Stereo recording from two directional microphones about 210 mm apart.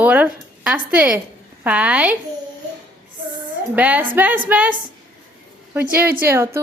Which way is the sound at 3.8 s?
10° right (ahead or behind).